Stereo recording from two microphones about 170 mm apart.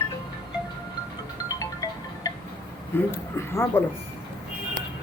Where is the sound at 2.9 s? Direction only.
15° left (ahead or behind).